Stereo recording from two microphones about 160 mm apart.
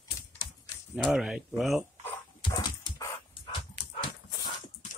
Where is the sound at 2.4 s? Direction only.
25° left (ahead or behind).